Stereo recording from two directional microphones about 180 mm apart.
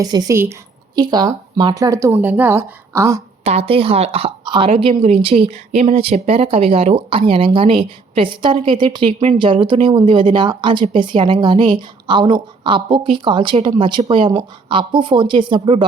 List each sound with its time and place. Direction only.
0.0 s a woman's voice: 20° right (ahead or behind)
3.4 s a woman's voice: 35° right (ahead or behind)